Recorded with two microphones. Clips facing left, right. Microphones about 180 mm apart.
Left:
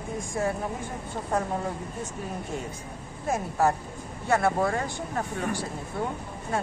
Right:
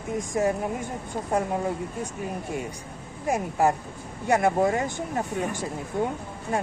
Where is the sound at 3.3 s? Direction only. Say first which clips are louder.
Right 2 dB; 15° right (ahead or behind).